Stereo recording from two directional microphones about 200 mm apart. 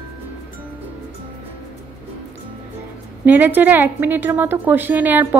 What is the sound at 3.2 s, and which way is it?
A woman's voice, 10° right (ahead or behind).